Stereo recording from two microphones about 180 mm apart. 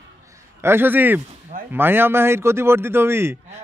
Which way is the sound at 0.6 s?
15° right (ahead or behind).